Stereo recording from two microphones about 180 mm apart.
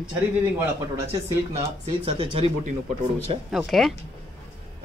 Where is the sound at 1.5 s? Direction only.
30° right (ahead or behind).